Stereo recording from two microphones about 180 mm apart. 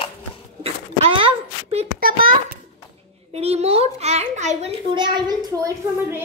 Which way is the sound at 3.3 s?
35° right (ahead or behind).